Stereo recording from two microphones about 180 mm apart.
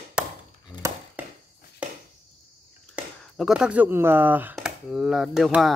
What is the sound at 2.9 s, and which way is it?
Speech, 5° right (ahead or behind).